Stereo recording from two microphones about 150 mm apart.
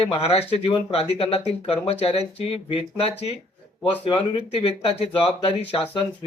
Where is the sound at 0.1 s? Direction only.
40° left (ahead or behind).